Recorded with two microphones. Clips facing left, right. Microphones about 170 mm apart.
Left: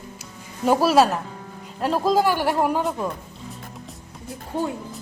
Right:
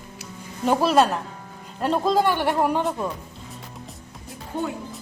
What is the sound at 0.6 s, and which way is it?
A woman's voice, 5° left (ahead or behind).